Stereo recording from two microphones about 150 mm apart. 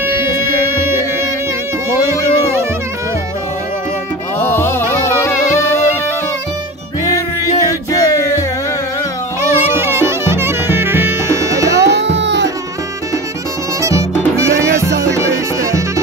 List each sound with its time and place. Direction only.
0.0 s music: 15° right (ahead or behind)
1.9 s music: 20° right (ahead or behind)
4.4 s music: 15° left (ahead or behind)
7.9 s music: 25° left (ahead or behind)
9.4 s music: 15° right (ahead or behind)
13.7 s music: 20° right (ahead or behind)